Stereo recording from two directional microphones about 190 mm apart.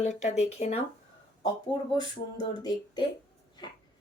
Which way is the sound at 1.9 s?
20° left (ahead or behind).